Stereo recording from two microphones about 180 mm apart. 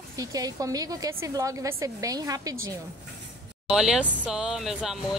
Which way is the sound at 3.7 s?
5° right (ahead or behind).